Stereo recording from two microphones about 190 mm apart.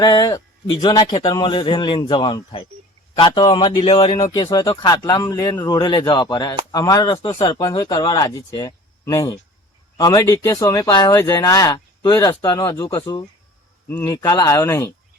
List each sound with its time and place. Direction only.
0.0 s speech: 20° left (ahead or behind)